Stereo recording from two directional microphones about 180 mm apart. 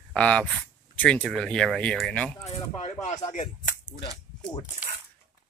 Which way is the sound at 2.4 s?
40° left (ahead or behind).